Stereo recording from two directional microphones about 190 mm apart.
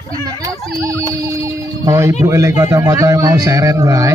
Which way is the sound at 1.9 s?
15° right (ahead or behind).